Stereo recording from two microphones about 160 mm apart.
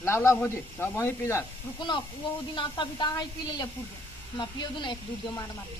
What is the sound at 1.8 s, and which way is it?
A woman's voice, 30° left (ahead or behind).